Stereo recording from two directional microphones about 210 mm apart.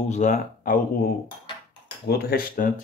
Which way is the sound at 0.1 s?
35° left (ahead or behind).